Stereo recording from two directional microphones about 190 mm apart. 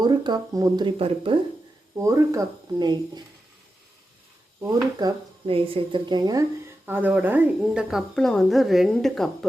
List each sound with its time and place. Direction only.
0.0 s speech: 20° right (ahead or behind)
2.0 s speech: 15° right (ahead or behind)
4.6 s speech: 20° right (ahead or behind)
6.8 s speech: 10° right (ahead or behind)